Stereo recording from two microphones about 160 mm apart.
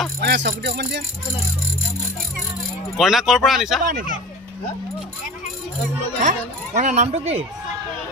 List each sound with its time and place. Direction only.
0.2 s speech: 90° right
3.0 s speech: centre (ahead or behind)
3.8 s speech: 60° right (ahead or behind)
6.2 s speech: 50° right (ahead or behind)